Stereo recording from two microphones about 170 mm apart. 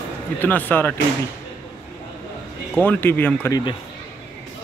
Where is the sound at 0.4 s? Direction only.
10° left (ahead or behind).